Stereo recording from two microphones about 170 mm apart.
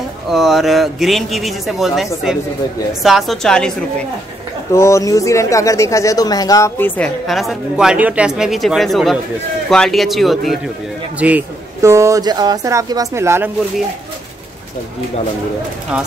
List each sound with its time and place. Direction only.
0.3 s speech: centre (ahead or behind)
4.7 s speech: 15° left (ahead or behind)
7.2 s speech: centre (ahead or behind)